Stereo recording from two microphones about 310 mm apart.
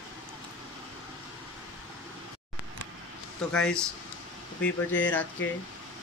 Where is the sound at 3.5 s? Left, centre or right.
Centre.